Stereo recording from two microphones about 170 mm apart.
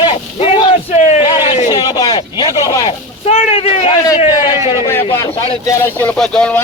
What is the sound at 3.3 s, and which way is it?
Speech, 35° left (ahead or behind).